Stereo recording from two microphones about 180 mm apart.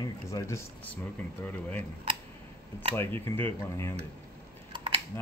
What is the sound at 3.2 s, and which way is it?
Speech, 15° left (ahead or behind).